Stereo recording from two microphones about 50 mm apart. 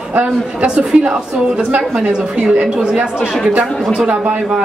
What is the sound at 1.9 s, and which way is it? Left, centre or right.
A woman's voice, centre.